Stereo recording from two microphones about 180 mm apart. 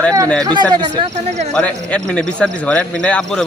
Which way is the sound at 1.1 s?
40° right (ahead or behind).